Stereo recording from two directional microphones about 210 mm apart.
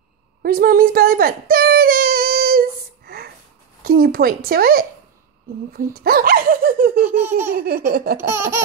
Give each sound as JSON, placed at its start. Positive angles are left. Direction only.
{"t": 0.4, "sound": "a sound", "side_deg": -45}
{"t": 3.8, "sound": "speech", "side_deg": -45}
{"t": 7.2, "sound": "laughter", "side_deg": -10}
{"t": 7.5, "sound": "speech", "side_deg": -45}